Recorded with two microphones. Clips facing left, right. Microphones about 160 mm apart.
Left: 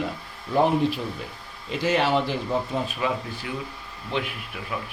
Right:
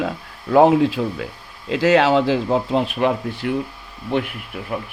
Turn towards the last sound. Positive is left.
turn(degrees=-55)  # may be behind; listen again after turning